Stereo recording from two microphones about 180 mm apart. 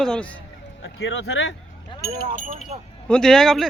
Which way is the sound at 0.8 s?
85° left.